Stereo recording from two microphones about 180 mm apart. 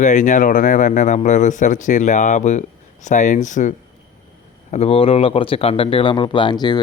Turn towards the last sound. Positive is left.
turn(degrees=25)  # may be behind; listen again after turning